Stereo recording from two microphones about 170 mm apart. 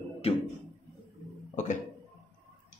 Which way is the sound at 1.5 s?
45° left (ahead or behind).